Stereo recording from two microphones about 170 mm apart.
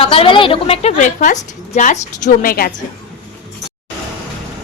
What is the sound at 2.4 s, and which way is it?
Speech, 60° left (ahead or behind).